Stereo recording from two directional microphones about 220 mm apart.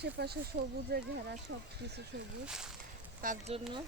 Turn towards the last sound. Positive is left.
turn(degrees=-30)  # may be behind; listen again after turning